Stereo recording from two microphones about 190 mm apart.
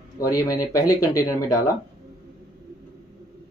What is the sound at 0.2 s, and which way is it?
Speech, 20° left (ahead or behind).